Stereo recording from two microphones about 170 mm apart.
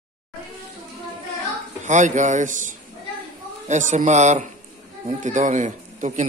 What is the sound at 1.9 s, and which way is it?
Speech, 45° right (ahead or behind).